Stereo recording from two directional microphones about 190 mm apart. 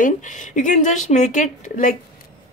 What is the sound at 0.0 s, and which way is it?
Speech, 40° left (ahead or behind).